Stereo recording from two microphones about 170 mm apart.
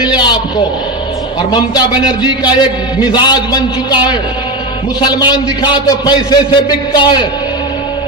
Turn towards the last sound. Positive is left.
turn(degrees=25)  # may be behind; listen again after turning